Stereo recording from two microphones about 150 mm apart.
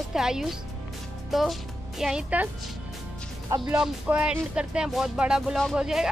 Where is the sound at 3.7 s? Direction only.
10° right (ahead or behind).